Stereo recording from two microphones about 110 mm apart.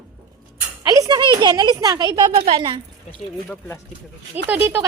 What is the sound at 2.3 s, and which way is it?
Speech, 60° right (ahead or behind).